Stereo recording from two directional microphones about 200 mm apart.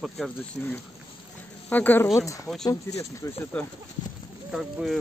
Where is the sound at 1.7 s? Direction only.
10° left (ahead or behind).